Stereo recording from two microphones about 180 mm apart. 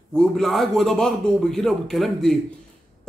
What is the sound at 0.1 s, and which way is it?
A man's voice, 5° left (ahead or behind).